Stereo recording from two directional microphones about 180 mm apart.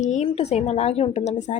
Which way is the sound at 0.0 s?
40° left (ahead or behind).